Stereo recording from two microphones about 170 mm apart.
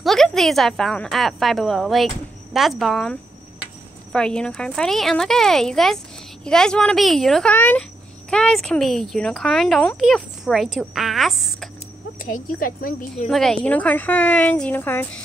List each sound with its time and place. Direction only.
0.0 s a woman's voice: centre (ahead or behind)
12.3 s a woman's voice: 55° left (ahead or behind)
13.3 s a woman's voice: 5° left (ahead or behind)